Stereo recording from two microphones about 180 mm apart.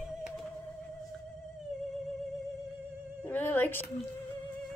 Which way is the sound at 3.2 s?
10° left (ahead or behind).